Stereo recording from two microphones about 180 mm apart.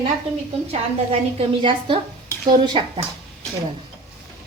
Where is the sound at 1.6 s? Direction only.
25° right (ahead or behind).